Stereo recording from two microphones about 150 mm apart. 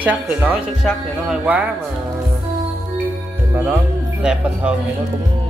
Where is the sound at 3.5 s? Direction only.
15° right (ahead or behind).